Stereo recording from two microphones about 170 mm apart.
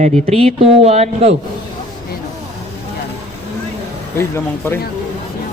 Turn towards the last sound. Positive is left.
turn(degrees=15)  # may be behind; listen again after turning